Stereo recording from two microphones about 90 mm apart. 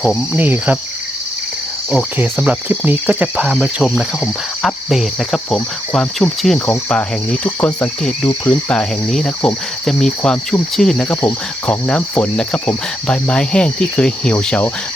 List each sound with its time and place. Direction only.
0.3 s cricket: 20° right (ahead or behind)
2.4 s speech: 15° right (ahead or behind)
4.6 s speech: centre (ahead or behind)
6.7 s cricket: 10° left (ahead or behind)
9.8 s speech: 5° left (ahead or behind)
10.8 s cricket: 10° left (ahead or behind)